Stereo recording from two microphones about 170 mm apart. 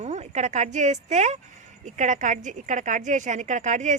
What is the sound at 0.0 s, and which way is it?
A woman's voice, 40° right (ahead or behind).